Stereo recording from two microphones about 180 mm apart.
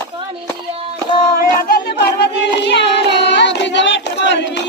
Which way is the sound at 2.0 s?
65° left (ahead or behind).